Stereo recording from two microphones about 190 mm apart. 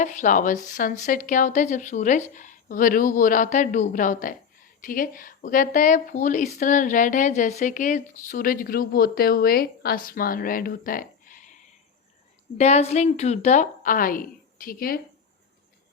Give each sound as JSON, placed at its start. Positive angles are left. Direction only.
{"t": 0.0, "sound": "a woman's voice", "side_deg": 40}
{"t": 12.5, "sound": "a woman's voice", "side_deg": 35}